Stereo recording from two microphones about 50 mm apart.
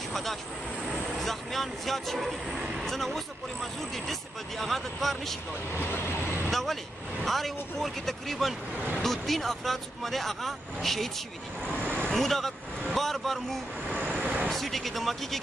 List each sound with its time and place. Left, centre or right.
0.1 s vehicle: centre
0.8 s speech: centre
5.8 s speech: left
6.5 s speech: centre
12.1 s speech: centre
14.2 s vehicle: right
14.5 s speech: centre